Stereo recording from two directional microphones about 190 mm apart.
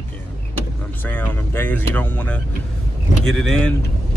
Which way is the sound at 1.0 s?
10° left (ahead or behind).